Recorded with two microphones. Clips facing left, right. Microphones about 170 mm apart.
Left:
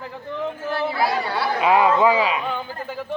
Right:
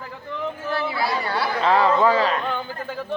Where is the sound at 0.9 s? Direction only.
45° left (ahead or behind).